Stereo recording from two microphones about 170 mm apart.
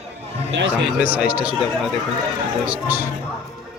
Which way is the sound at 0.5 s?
90° right.